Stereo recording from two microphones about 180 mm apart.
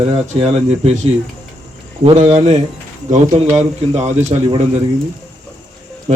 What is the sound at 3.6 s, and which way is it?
A man's voice, 35° right (ahead or behind).